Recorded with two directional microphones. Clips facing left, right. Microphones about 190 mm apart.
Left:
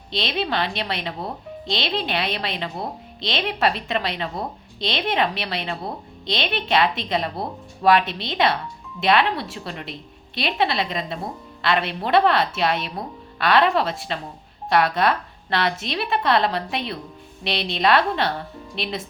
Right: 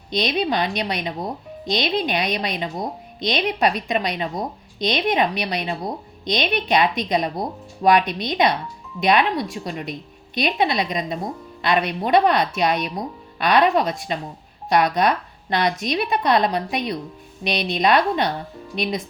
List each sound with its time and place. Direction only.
0.1 s speech: 15° right (ahead or behind)